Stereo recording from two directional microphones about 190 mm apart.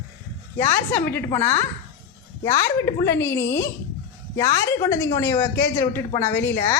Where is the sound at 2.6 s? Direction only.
15° left (ahead or behind).